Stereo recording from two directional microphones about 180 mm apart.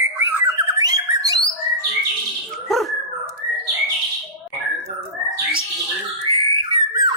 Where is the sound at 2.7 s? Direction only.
Centre (ahead or behind).